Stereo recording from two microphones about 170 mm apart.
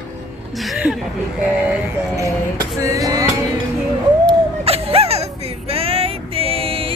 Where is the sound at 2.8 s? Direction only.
20° right (ahead or behind).